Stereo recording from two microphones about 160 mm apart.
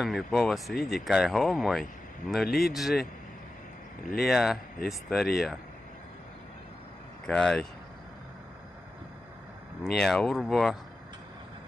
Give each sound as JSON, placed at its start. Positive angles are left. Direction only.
{"t": 0.0, "sound": "speech", "side_deg": 0}
{"t": 2.4, "sound": "speech", "side_deg": 75}
{"t": 2.7, "sound": "speech", "side_deg": 0}
{"t": 4.2, "sound": "speech", "side_deg": 0}
{"t": 7.2, "sound": "speech", "side_deg": 5}
{"t": 9.8, "sound": "speech", "side_deg": 5}